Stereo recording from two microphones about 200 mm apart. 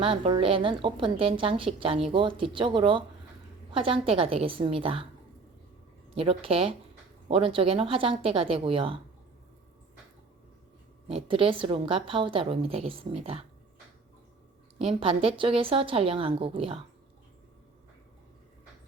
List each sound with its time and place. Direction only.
0.0 s a woman's voice: 25° right (ahead or behind)
6.1 s a woman's voice: 30° right (ahead or behind)
11.1 s a woman's voice: 25° right (ahead or behind)
14.8 s a woman's voice: 30° right (ahead or behind)